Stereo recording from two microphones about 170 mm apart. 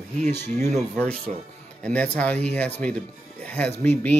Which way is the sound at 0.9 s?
5° left (ahead or behind).